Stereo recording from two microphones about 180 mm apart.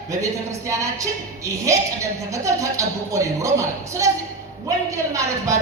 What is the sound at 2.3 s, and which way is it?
Speech, 15° right (ahead or behind).